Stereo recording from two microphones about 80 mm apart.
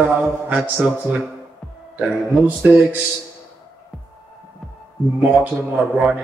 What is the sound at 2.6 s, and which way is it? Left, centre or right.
Speech, centre.